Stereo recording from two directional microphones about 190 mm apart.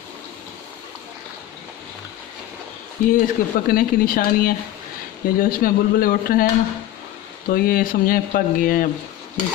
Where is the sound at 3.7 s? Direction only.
50° left (ahead or behind).